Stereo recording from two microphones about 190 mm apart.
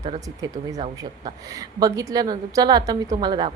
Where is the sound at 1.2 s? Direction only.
20° right (ahead or behind).